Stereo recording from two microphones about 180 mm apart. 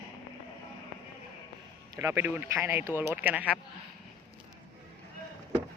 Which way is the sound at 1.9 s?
15° right (ahead or behind).